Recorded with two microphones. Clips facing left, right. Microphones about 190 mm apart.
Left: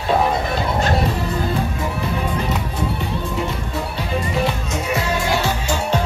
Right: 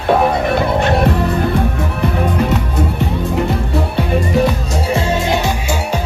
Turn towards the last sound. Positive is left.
turn(degrees=-25)  # may be behind; listen again after turning